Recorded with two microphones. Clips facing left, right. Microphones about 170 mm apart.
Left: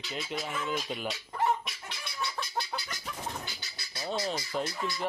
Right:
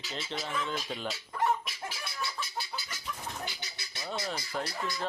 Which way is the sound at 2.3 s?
70° left (ahead or behind).